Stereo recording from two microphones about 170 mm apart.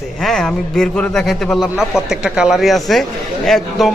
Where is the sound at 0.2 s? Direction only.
Centre (ahead or behind).